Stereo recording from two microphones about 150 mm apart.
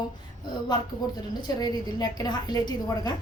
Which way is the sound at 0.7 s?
30° left (ahead or behind).